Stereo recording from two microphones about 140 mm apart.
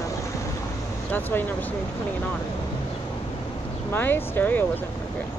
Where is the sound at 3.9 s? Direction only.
15° left (ahead or behind).